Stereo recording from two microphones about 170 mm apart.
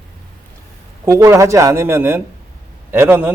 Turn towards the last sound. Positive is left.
turn(degrees=-15)  # may be behind; listen again after turning